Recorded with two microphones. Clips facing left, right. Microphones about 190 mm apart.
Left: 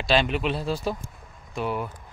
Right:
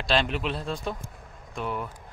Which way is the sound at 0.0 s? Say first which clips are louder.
Left 3 dB; centre (ahead or behind).